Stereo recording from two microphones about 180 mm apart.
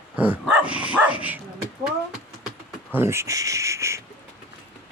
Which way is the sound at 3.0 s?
15° right (ahead or behind).